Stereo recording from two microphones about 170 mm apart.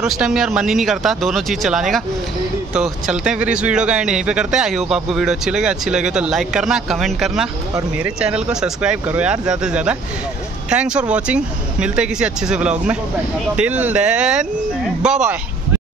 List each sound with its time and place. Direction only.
0.0 s speech: 5° right (ahead or behind)
8.5 s speech: 5° right (ahead or behind)